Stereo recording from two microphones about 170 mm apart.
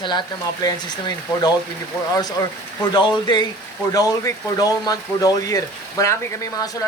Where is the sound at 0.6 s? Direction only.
25° left (ahead or behind).